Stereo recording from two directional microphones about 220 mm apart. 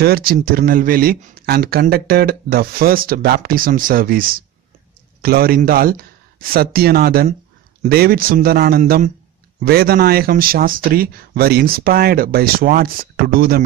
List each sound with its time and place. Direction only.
0.0 s speech: 45° right (ahead or behind)